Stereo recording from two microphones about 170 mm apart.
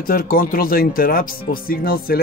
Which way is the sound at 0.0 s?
60° left (ahead or behind).